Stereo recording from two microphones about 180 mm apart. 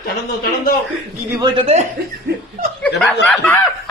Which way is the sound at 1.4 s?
25° right (ahead or behind).